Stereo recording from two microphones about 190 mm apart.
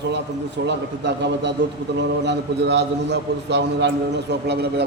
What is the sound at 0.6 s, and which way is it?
A man's voice, 65° right (ahead or behind).